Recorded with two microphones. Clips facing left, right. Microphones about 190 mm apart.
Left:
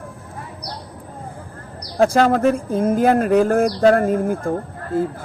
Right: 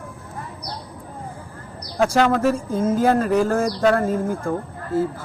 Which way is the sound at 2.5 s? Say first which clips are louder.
Left 2 dB; 60° left (ahead or behind).